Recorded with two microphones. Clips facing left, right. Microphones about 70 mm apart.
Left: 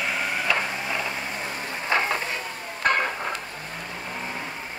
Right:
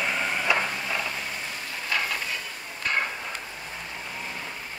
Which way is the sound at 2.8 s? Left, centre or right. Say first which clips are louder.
Left 5 dB; left.